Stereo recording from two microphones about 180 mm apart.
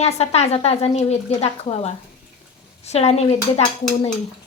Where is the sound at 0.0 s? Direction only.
35° left (ahead or behind).